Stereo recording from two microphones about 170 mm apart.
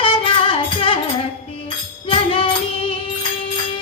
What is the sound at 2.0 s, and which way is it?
Music, 30° left (ahead or behind).